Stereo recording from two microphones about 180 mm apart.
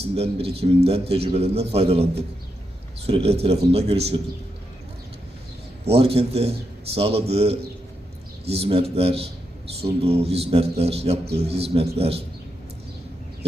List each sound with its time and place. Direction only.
0.2 s a man's voice: 35° right (ahead or behind)
3.1 s a man's voice: 35° right (ahead or behind)
5.8 s a man's voice: 35° right (ahead or behind)